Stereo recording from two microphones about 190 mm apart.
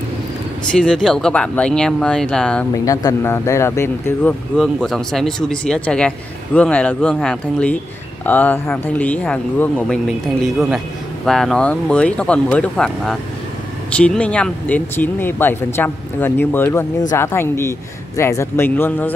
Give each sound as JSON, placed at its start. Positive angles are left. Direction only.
{"t": 0.7, "sound": "speech", "side_deg": 5}
{"t": 2.8, "sound": "speech", "side_deg": 20}